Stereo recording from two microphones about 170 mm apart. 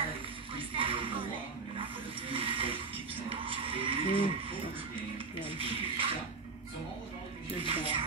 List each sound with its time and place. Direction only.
0.6 s a sound: 30° right (ahead or behind)
1.8 s water: 30° right (ahead or behind)
3.3 s music: 30° right (ahead or behind)
5.6 s mechanisms: 35° right (ahead or behind)
7.6 s music: 35° right (ahead or behind)